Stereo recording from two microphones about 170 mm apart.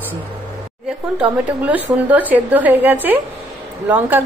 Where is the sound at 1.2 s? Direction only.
10° right (ahead or behind).